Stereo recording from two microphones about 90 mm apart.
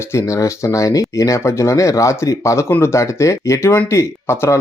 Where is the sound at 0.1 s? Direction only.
35° left (ahead or behind).